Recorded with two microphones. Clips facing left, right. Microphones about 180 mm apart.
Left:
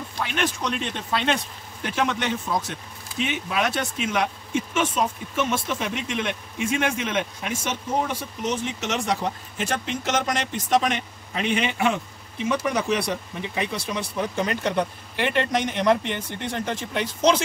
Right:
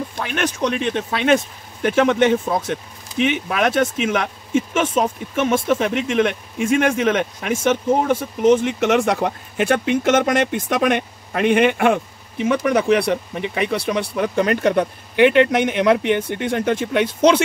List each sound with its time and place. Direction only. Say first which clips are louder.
0.2 s speech: right 4 dB; 50° right (ahead or behind)